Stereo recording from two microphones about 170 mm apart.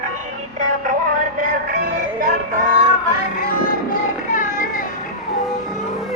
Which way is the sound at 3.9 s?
50° left (ahead or behind).